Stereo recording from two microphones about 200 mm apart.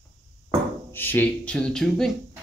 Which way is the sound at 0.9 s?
10° left (ahead or behind).